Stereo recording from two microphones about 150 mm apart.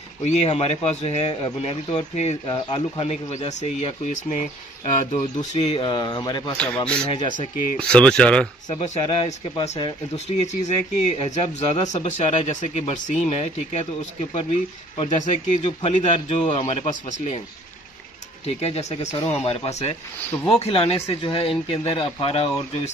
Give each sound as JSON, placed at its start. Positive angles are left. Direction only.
{"t": 0.2, "sound": "speech", "side_deg": 50}
{"t": 6.5, "sound": "speech", "side_deg": 5}
{"t": 7.1, "sound": "speech", "side_deg": 30}
{"t": 7.9, "sound": "speech", "side_deg": 5}
{"t": 9.0, "sound": "speech", "side_deg": 35}
{"t": 10.1, "sound": "speech", "side_deg": 50}
{"t": 15.0, "sound": "speech", "side_deg": 55}
{"t": 18.4, "sound": "speech", "side_deg": 45}